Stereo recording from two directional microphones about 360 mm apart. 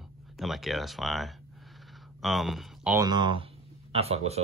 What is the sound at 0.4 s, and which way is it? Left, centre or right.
Speech, centre.